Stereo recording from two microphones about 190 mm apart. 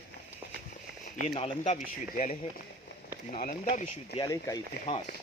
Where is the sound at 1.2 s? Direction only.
35° left (ahead or behind).